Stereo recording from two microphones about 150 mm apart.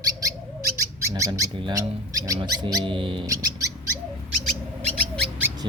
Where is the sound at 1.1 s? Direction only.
20° right (ahead or behind).